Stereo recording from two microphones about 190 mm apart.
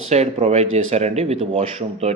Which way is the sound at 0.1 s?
35° right (ahead or behind).